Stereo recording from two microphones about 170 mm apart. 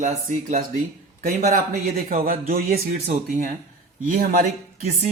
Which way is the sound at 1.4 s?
60° right (ahead or behind).